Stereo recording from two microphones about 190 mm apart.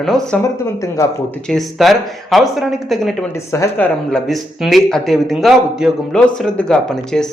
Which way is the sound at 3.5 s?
10° left (ahead or behind).